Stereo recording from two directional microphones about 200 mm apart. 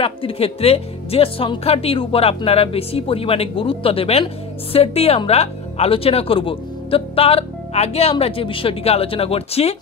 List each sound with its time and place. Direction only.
0.0 s speech: 30° left (ahead or behind)